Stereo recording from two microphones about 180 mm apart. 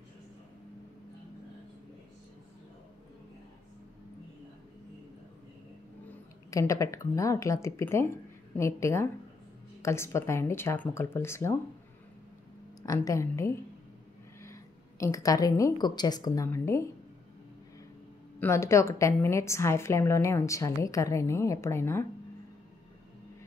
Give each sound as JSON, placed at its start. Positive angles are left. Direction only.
{"t": 6.5, "sound": "a woman's voice", "side_deg": 15}
{"t": 12.8, "sound": "a woman's voice", "side_deg": 20}
{"t": 18.4, "sound": "a woman's voice", "side_deg": 15}